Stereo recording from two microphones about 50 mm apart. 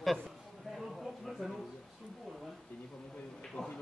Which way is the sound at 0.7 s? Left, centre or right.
Centre.